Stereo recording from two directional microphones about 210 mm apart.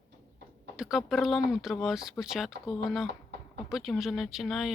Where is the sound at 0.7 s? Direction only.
5° right (ahead or behind).